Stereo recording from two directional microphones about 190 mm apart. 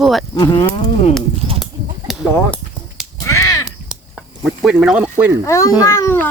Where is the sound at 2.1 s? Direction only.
Centre (ahead or behind).